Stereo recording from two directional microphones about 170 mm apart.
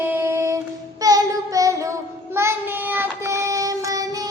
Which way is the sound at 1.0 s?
20° right (ahead or behind).